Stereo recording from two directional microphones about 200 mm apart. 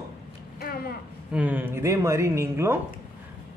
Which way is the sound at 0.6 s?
50° left (ahead or behind).